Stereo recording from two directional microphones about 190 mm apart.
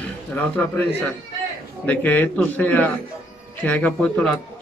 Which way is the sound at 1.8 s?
10° left (ahead or behind).